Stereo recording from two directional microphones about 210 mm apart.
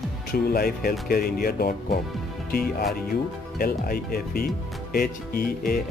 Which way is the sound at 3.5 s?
45° left (ahead or behind).